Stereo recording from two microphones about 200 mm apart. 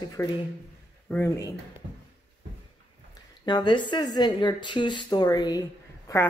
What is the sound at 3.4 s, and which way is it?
Speech, 20° left (ahead or behind).